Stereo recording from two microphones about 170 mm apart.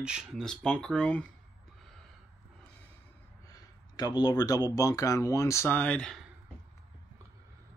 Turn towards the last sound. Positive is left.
turn(degrees=5)  # may be behind; listen again after turning